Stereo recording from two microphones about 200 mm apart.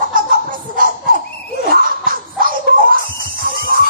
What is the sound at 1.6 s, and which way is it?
Music, 45° right (ahead or behind).